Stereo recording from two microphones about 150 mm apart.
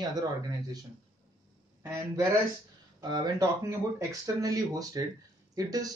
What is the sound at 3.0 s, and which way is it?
Speech, 30° right (ahead or behind).